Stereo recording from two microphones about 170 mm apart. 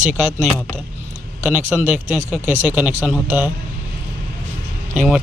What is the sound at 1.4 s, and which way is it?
Speech, 10° right (ahead or behind).